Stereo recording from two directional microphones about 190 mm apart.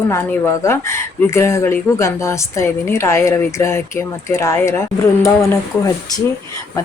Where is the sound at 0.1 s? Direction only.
15° left (ahead or behind).